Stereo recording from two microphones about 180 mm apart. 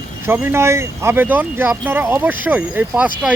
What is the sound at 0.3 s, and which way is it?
Speech, 10° right (ahead or behind).